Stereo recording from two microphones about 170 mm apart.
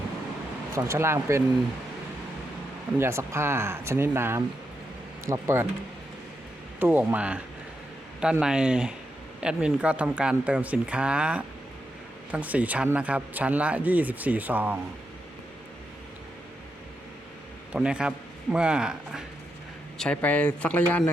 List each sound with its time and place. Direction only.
0.7 s speech: 15° right (ahead or behind)
3.0 s speech: 15° right (ahead or behind)
6.7 s speech: 10° right (ahead or behind)
17.7 s a man's voice: 5° right (ahead or behind)
20.0 s speech: 5° left (ahead or behind)